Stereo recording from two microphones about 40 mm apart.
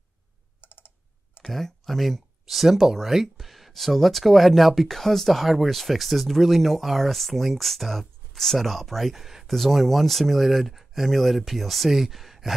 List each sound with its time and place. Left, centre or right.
0.6 s typing: left
1.4 s speech: centre